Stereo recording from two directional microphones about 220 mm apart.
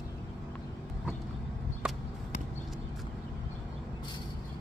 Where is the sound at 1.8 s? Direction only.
5° right (ahead or behind).